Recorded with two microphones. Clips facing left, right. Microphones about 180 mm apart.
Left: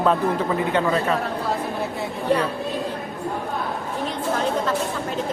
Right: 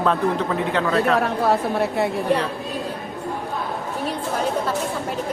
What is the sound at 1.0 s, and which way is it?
A woman's voice, 80° right.